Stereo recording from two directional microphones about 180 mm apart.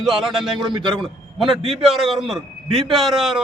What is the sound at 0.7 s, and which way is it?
Speech, 25° right (ahead or behind).